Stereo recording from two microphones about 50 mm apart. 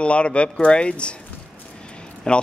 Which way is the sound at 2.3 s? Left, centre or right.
Centre.